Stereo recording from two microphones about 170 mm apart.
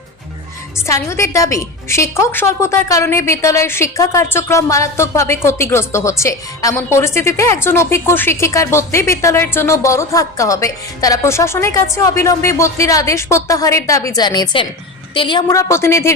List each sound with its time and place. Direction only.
0.9 s a woman's voice: 15° left (ahead or behind)